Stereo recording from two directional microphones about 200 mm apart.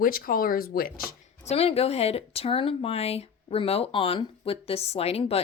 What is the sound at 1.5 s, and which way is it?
Speech, 30° left (ahead or behind).